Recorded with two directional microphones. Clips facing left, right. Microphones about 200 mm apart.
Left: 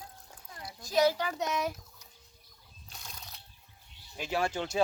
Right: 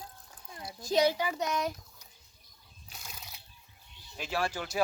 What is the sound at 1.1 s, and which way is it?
Speech, 10° right (ahead or behind).